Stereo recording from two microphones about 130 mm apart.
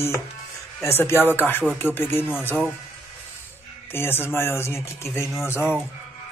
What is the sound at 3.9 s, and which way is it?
Speech, 15° left (ahead or behind).